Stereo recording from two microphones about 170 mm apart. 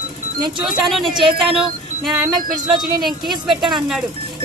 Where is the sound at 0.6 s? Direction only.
Centre (ahead or behind).